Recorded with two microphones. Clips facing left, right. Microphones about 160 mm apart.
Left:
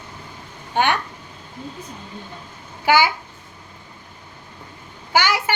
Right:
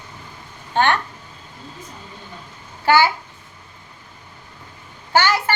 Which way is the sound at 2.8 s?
15° left (ahead or behind).